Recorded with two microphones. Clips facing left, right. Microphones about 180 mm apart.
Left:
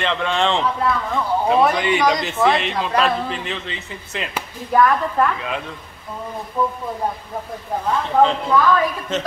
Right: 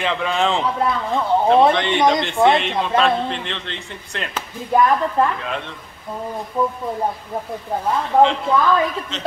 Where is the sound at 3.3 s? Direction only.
5° left (ahead or behind).